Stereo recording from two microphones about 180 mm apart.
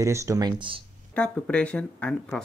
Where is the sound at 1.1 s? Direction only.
5° left (ahead or behind).